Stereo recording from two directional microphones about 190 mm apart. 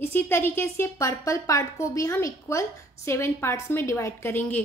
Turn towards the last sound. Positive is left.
turn(degrees=10)  # may be behind; listen again after turning